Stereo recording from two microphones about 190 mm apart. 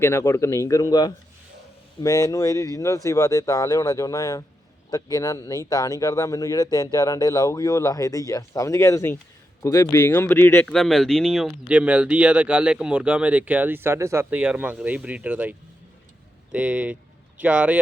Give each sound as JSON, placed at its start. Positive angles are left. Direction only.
{"t": 0.0, "sound": "speech", "side_deg": 15}